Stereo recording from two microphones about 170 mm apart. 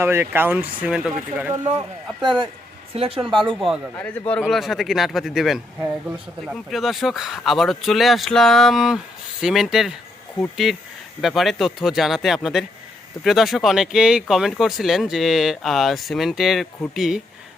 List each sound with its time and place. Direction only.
0.0 s speech: 15° right (ahead or behind)
2.2 s speech: 30° right (ahead or behind)
3.3 s speech: centre (ahead or behind)